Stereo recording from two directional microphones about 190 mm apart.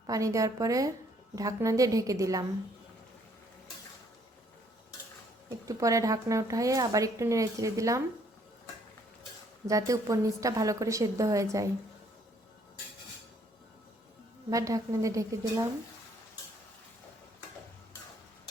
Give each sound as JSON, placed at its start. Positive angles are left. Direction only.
{"t": 0.1, "sound": "speech", "side_deg": -15}
{"t": 5.5, "sound": "speech", "side_deg": -15}
{"t": 9.6, "sound": "speech", "side_deg": -15}
{"t": 14.5, "sound": "speech", "side_deg": -15}